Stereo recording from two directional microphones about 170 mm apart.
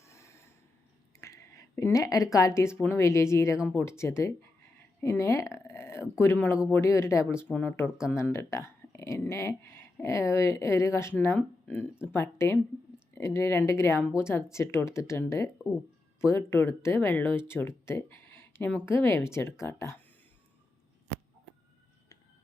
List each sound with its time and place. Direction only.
0.0 s snort: 15° left (ahead or behind)
1.2 s a woman's voice: 15° left (ahead or behind)